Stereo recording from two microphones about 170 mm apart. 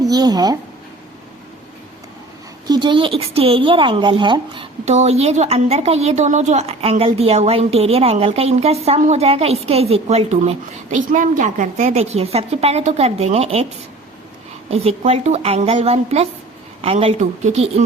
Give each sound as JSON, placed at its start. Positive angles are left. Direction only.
{"t": 0.0, "sound": "speech", "side_deg": -20}
{"t": 2.6, "sound": "speech", "side_deg": -25}
{"t": 14.7, "sound": "speech", "side_deg": -40}